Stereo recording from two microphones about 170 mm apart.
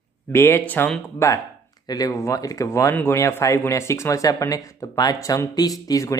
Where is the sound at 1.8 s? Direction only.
20° left (ahead or behind).